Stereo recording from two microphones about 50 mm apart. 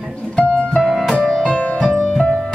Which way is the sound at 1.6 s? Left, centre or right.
Left.